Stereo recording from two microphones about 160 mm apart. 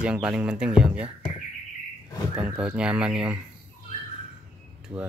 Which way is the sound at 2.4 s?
10° right (ahead or behind).